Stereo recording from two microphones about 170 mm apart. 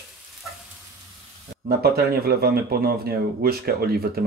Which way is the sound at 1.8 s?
65° right (ahead or behind).